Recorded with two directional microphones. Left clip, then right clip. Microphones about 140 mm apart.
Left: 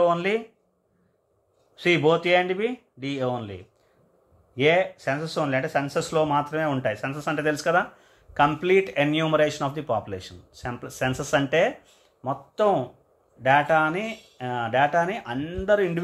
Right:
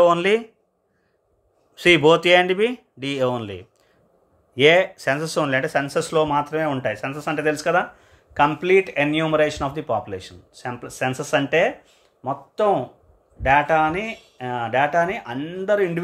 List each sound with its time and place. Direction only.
0.0 s speech: 45° right (ahead or behind)
1.8 s speech: 55° right (ahead or behind); by 16.0 s 10° right (ahead or behind)